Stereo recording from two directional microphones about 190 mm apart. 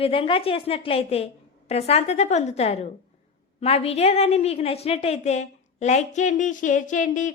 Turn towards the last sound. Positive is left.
turn(degrees=40)  # may be behind; listen again after turning